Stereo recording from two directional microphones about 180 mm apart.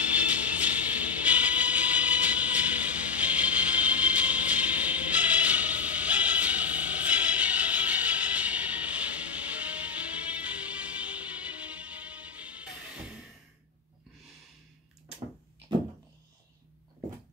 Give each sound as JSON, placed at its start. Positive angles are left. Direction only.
{"t": 0.1, "sound": "music", "side_deg": -10}